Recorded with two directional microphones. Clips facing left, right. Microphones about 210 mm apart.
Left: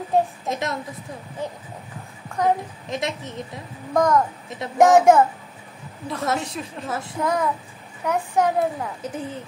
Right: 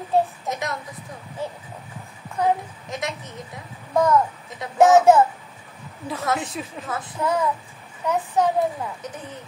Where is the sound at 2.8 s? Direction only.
25° left (ahead or behind).